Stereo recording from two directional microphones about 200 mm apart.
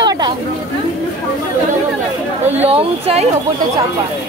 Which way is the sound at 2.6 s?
30° right (ahead or behind).